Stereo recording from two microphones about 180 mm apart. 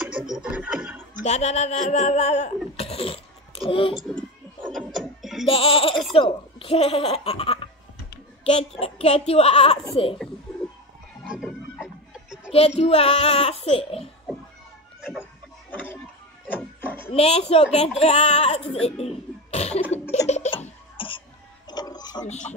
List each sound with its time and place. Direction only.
0.4 s speech: 5° right (ahead or behind)
1.2 s a child's voice: 40° left (ahead or behind)
4.7 s music: centre (ahead or behind)
5.5 s speech: 30° left (ahead or behind)
11.2 s music: 5° right (ahead or behind)
12.5 s speech: 35° left (ahead or behind)
16.4 s music: 10° left (ahead or behind)
17.1 s a child's voice: 35° left (ahead or behind)
20.2 s a sound: 35° left (ahead or behind)
22.2 s speech: 40° left (ahead or behind)